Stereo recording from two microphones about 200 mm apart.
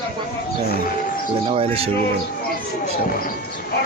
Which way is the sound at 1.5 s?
30° right (ahead or behind).